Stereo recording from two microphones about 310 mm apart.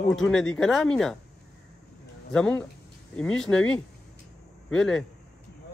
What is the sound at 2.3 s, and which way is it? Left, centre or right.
Speech, centre.